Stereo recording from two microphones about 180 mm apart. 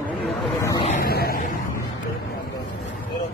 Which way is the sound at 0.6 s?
15° left (ahead or behind).